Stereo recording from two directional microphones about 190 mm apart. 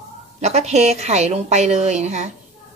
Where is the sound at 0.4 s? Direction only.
35° right (ahead or behind).